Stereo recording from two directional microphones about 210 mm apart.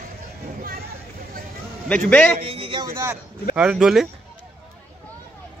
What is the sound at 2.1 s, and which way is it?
Speech, 5° left (ahead or behind).